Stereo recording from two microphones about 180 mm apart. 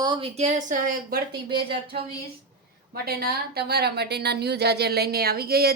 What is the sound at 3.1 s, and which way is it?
Speech, 60° right (ahead or behind).